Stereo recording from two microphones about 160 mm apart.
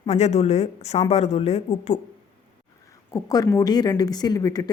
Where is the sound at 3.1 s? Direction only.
20° left (ahead or behind).